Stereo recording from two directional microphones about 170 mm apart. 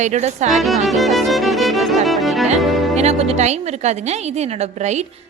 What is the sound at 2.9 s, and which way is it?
A woman's voice, 40° right (ahead or behind).